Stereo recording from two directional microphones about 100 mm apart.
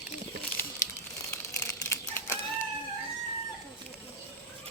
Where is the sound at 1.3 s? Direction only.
25° left (ahead or behind).